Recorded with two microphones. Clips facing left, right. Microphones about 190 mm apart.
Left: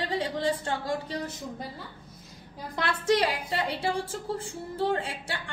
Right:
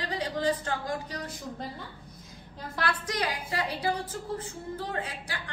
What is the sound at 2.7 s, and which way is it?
A woman's voice, 25° left (ahead or behind).